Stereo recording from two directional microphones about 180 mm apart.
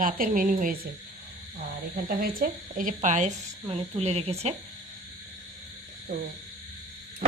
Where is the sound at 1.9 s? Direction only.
55° right (ahead or behind); by 4.5 s 35° right (ahead or behind).